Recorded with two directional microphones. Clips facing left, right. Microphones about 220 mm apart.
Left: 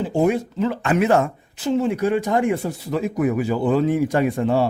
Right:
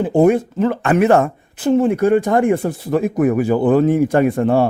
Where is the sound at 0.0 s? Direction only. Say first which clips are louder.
Right 6 dB; 55° right (ahead or behind).